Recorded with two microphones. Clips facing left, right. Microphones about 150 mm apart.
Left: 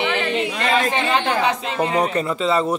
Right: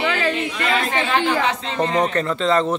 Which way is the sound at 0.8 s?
15° left (ahead or behind).